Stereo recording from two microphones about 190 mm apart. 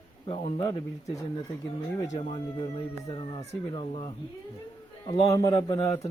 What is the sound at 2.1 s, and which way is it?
Speech, 30° left (ahead or behind).